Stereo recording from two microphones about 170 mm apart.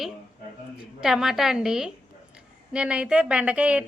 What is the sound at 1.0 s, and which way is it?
A woman's voice, centre (ahead or behind).